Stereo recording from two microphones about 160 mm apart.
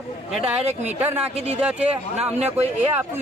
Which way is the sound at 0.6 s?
45° right (ahead or behind).